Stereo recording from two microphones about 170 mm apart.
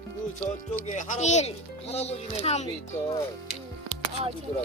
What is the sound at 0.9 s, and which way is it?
Speech, 45° left (ahead or behind).